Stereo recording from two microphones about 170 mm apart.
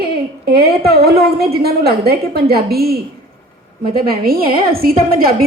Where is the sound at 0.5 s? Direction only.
65° right (ahead or behind).